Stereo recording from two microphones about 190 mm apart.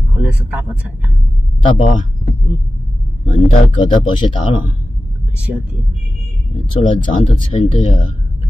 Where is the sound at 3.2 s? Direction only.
40° left (ahead or behind).